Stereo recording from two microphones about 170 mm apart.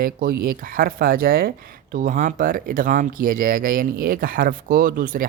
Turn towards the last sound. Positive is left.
turn(degrees=-55)  # may be behind; listen again after turning